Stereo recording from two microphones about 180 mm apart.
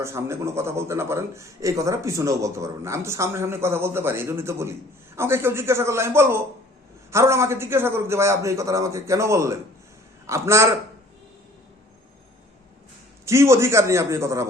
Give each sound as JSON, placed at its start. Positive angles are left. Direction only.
{"t": 0.0, "sound": "a man's voice", "side_deg": -15}
{"t": 13.2, "sound": "a man's voice", "side_deg": -15}